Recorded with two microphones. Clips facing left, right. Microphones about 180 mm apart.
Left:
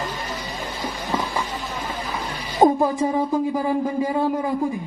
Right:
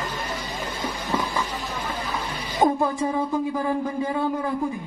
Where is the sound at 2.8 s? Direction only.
15° left (ahead or behind).